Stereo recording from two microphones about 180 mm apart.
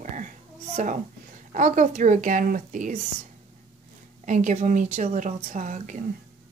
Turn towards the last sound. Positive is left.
turn(degrees=-45)  # may be behind; listen again after turning